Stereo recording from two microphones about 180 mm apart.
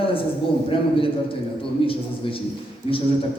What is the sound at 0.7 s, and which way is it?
A man's voice, 30° left (ahead or behind).